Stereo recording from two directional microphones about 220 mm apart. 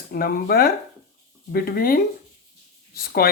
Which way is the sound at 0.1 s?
40° left (ahead or behind).